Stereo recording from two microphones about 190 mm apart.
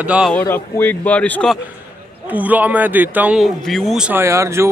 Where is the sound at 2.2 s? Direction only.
10° right (ahead or behind).